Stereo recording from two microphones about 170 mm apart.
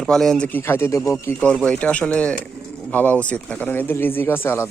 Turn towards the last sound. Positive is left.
turn(degrees=15)  # may be behind; listen again after turning